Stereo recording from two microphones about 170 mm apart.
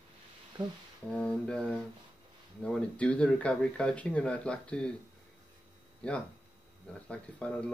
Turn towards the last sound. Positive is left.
turn(degrees=5)  # may be behind; listen again after turning